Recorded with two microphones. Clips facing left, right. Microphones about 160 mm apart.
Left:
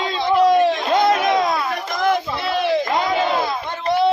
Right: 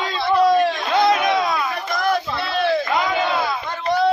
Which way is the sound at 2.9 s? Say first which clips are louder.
Left 1 dB; 35° left (ahead or behind).